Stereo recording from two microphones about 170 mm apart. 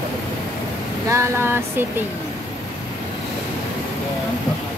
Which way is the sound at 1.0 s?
15° right (ahead or behind).